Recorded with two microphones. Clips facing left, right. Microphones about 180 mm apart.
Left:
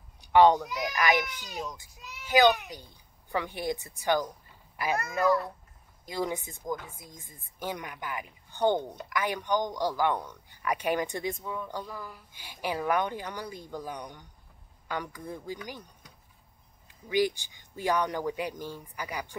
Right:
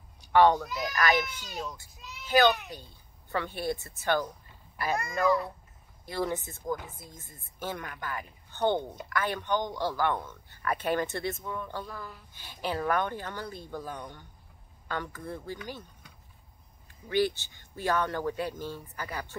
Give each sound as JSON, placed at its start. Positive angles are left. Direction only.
{"t": 0.3, "sound": "speech", "side_deg": 15}
{"t": 4.9, "sound": "a child's voice", "side_deg": 5}
{"t": 6.0, "sound": "speech", "side_deg": 15}
{"t": 16.8, "sound": "speech", "side_deg": 15}